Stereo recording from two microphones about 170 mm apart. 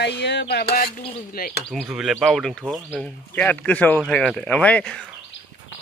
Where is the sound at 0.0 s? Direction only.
90° left; by 1.5 s 60° left (ahead or behind).